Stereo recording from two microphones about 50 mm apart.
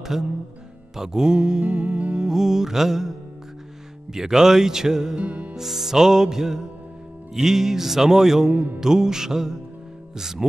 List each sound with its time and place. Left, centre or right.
0.0 s speech: centre
0.9 s music: centre
5.2 s music: right
5.6 s music: centre